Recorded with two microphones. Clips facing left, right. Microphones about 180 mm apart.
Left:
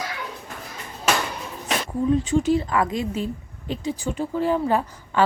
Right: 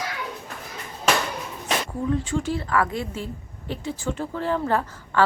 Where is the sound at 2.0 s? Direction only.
20° left (ahead or behind).